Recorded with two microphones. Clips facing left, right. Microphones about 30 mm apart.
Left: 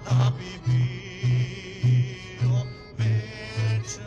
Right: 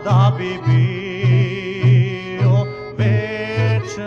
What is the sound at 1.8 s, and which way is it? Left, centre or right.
Music, right.